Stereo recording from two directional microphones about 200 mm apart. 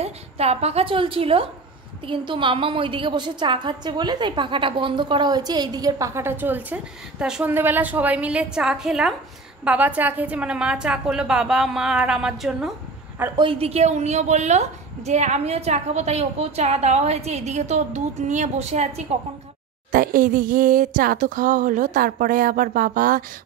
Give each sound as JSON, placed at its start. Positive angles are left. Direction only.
{"t": 0.0, "sound": "a woman's voice", "side_deg": -30}
{"t": 13.4, "sound": "a woman's voice", "side_deg": -30}
{"t": 19.9, "sound": "speech", "side_deg": -45}